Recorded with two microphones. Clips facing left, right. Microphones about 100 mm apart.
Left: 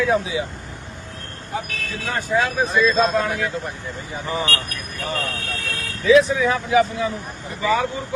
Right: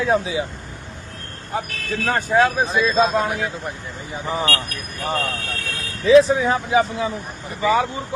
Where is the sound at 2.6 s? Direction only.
25° right (ahead or behind).